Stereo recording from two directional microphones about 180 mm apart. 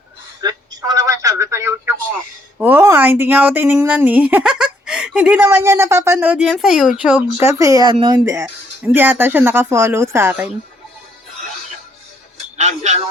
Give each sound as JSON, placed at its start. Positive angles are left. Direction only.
{"t": 0.4, "sound": "telephone", "side_deg": -20}
{"t": 2.6, "sound": "speech", "side_deg": -10}
{"t": 8.2, "sound": "speech", "side_deg": -15}
{"t": 12.5, "sound": "a sound", "side_deg": -40}